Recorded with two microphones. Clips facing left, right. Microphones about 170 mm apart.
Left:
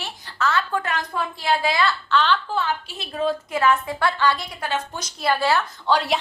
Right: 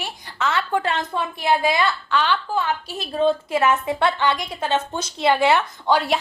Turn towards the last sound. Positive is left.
turn(degrees=0)  # may be behind; listen again after turning